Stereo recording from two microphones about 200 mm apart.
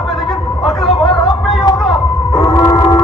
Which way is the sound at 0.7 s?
Centre (ahead or behind).